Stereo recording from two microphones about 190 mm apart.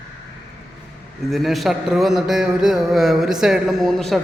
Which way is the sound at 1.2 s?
Centre (ahead or behind).